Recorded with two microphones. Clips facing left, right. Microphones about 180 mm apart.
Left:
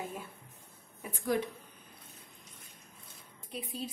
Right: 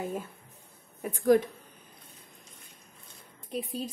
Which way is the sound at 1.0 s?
45° right (ahead or behind).